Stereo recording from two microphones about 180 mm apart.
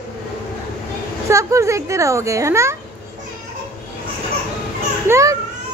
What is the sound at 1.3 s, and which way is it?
Speech, 15° right (ahead or behind).